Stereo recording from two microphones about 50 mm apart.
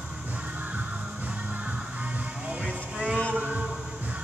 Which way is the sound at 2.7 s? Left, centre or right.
Right.